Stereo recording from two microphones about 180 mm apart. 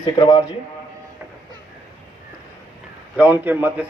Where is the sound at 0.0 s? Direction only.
25° left (ahead or behind).